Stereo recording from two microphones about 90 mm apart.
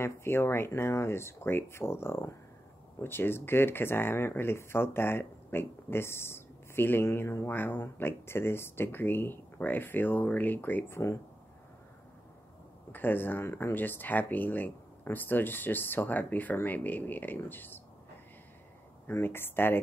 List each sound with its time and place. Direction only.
0.0 s speech: 25° left (ahead or behind)
12.9 s speech: 20° left (ahead or behind)
19.0 s speech: 25° left (ahead or behind)